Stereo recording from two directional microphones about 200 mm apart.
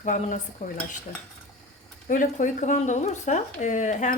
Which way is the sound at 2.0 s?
40° left (ahead or behind).